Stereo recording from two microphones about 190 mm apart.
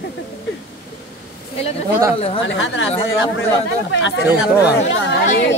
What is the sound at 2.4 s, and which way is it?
Speech, 90° left.